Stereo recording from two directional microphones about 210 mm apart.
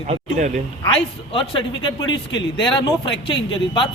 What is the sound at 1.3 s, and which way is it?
Speech, 25° left (ahead or behind).